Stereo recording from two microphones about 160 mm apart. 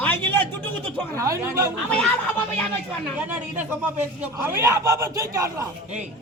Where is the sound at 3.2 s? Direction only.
10° right (ahead or behind).